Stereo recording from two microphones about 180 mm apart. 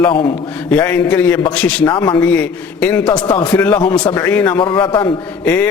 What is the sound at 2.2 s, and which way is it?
Speech, 10° left (ahead or behind).